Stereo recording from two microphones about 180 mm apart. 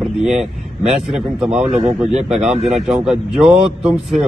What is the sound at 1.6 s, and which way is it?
Speech, 40° right (ahead or behind).